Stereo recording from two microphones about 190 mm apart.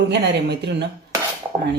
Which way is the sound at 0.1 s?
60° right (ahead or behind).